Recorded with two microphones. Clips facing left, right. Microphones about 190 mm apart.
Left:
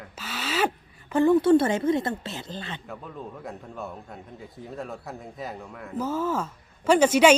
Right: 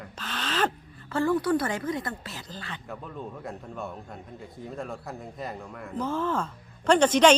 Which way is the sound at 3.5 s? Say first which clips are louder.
Even; centre (ahead or behind).